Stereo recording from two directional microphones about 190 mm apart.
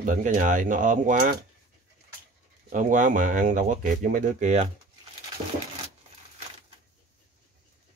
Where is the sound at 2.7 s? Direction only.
45° right (ahead or behind).